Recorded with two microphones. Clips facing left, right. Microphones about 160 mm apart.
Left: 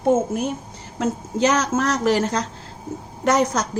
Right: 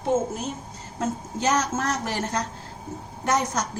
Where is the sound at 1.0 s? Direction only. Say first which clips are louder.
Left 6 dB; 85° left.